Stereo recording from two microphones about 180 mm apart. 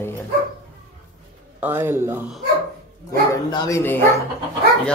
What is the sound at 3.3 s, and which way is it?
Speech, 15° left (ahead or behind).